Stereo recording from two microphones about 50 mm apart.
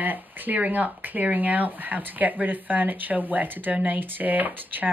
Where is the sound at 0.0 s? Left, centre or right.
Right.